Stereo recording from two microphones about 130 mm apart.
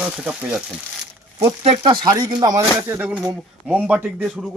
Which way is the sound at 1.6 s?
50° right (ahead or behind).